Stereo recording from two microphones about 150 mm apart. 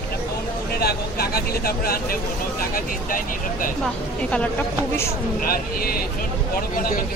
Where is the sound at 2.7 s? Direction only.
65° left (ahead or behind).